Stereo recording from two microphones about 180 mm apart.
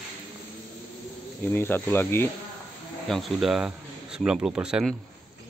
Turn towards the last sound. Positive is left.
turn(degrees=-5)  # may be behind; listen again after turning